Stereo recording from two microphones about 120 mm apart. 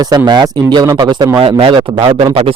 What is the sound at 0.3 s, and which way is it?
Speech, 35° right (ahead or behind).